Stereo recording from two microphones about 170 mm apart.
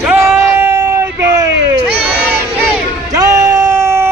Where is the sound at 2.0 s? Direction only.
5° right (ahead or behind).